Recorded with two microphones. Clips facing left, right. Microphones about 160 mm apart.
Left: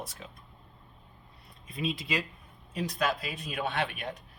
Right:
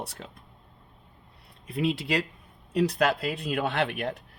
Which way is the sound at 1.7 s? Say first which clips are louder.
Right 6 dB; 70° right (ahead or behind).